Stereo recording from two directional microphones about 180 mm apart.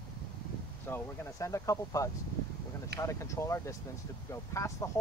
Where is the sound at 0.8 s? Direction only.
10° left (ahead or behind).